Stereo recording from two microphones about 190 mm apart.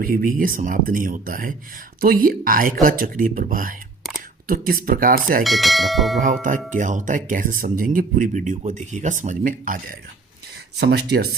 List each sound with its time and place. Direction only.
0.0 s speech: 50° right (ahead or behind)
5.4 s speech: centre (ahead or behind)
6.7 s speech: 40° right (ahead or behind)
10.8 s speech: 60° right (ahead or behind)